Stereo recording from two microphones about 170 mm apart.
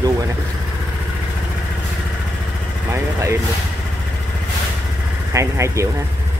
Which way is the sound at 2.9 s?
15° right (ahead or behind).